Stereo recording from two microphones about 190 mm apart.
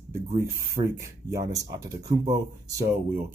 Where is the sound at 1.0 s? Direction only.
15° right (ahead or behind).